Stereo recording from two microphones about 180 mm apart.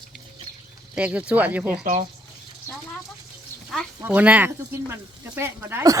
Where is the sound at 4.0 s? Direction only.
10° right (ahead or behind).